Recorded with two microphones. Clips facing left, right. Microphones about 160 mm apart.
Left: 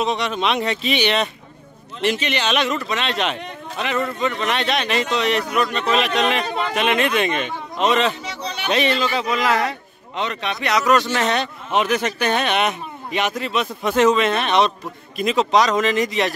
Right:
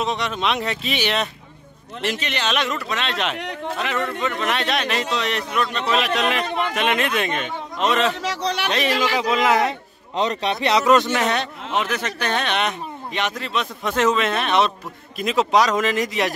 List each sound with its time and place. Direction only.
0.0 s speech: centre (ahead or behind)
3.3 s a man's voice: 90° right
3.8 s speech: centre (ahead or behind)
8.1 s a man's voice: 85° right
9.3 s a man's voice: 20° right (ahead or behind)
10.1 s a man's voice: 35° right (ahead or behind); by 11.4 s 10° right (ahead or behind)
11.7 s a man's voice: 15° left (ahead or behind); by 16.3 s 5° right (ahead or behind)